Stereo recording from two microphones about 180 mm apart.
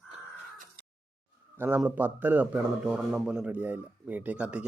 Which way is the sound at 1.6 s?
10° right (ahead or behind).